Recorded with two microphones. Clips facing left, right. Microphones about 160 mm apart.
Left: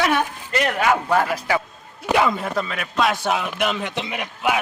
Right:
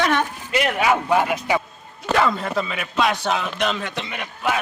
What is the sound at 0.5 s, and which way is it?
A man's voice, 10° right (ahead or behind).